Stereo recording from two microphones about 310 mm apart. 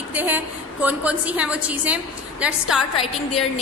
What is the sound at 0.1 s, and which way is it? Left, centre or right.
A woman's voice, centre.